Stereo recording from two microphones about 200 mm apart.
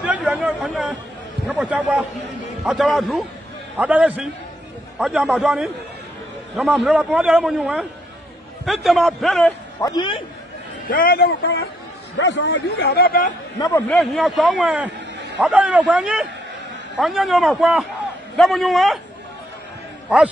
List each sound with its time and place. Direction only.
0.0 s chatter: 5° right (ahead or behind)
1.5 s a man's voice: 5° right (ahead or behind)
9.8 s a man's voice: 20° left (ahead or behind)
10.9 s a man's voice: 45° left (ahead or behind)
13.6 s a man's voice: 10° left (ahead or behind)
13.9 s a man's voice: centre (ahead or behind)